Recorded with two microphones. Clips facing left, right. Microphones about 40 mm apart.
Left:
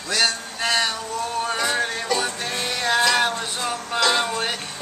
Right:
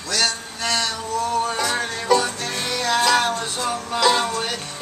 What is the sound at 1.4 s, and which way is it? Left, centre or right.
Music, centre.